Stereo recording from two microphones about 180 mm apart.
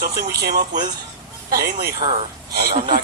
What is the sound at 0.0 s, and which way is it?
A man's voice, 60° right (ahead or behind).